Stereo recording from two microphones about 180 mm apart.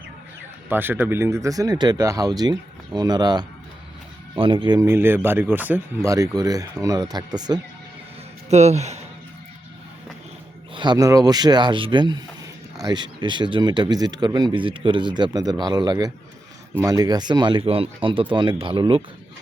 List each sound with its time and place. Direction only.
0.7 s speech: 10° right (ahead or behind)
8.4 s speech: 40° right (ahead or behind)
10.8 s speech: 20° right (ahead or behind)